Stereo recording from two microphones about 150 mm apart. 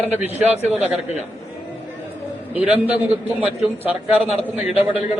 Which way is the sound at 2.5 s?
10° right (ahead or behind).